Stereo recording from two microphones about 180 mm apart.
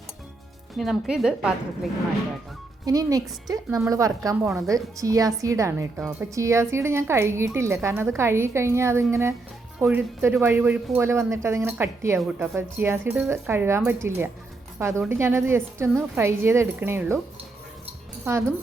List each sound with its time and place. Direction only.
0.8 s a woman's voice: 5° right (ahead or behind)
2.8 s a woman's voice: 20° right (ahead or behind)
6.0 s a woman's voice: 5° right (ahead or behind)
6.3 s a woman's voice: 15° right (ahead or behind)